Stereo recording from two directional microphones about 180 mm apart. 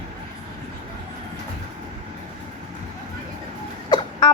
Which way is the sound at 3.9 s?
25° left (ahead or behind).